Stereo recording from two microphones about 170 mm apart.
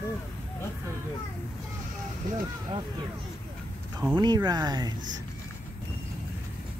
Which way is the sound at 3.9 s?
25° right (ahead or behind).